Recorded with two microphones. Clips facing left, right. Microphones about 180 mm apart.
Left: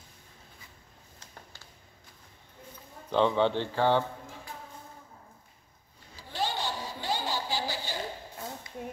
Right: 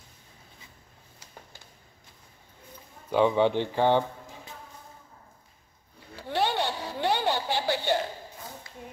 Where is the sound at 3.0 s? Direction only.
10° right (ahead or behind).